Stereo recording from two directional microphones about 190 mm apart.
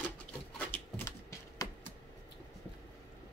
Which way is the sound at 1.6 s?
20° left (ahead or behind).